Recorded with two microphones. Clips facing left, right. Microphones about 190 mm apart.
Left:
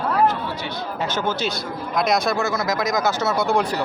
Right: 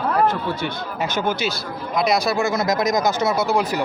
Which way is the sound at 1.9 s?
Centre (ahead or behind).